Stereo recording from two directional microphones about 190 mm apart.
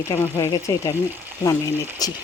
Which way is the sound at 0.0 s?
15° left (ahead or behind).